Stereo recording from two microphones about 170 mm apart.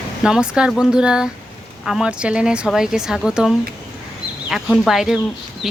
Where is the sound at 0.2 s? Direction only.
5° right (ahead or behind).